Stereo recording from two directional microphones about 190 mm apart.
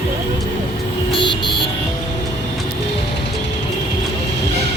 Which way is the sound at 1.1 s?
25° left (ahead or behind).